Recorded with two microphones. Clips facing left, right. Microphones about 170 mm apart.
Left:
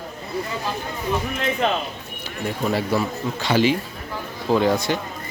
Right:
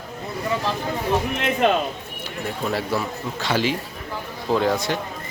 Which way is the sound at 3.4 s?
Centre (ahead or behind).